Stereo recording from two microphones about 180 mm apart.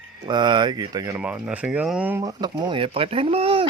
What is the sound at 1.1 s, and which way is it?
Speech, 5° right (ahead or behind).